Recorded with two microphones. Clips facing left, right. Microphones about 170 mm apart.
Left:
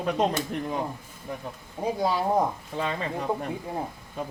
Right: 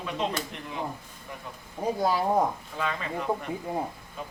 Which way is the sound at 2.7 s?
30° left (ahead or behind).